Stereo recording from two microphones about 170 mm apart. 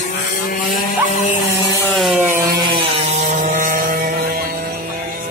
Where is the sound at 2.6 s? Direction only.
30° right (ahead or behind); by 4.5 s 60° right (ahead or behind).